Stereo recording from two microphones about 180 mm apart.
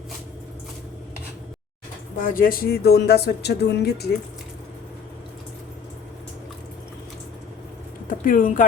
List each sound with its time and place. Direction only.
2.1 s speech: 50° left (ahead or behind)
8.2 s speech: 50° left (ahead or behind)